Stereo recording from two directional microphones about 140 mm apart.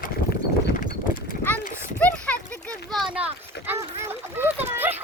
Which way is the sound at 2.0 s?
10° left (ahead or behind).